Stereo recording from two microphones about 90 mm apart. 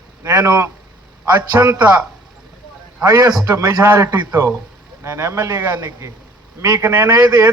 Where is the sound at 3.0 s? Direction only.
35° right (ahead or behind).